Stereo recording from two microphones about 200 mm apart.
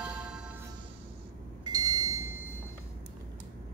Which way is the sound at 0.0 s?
5° right (ahead or behind).